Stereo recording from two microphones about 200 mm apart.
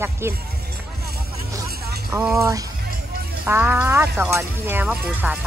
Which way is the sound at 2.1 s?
15° right (ahead or behind).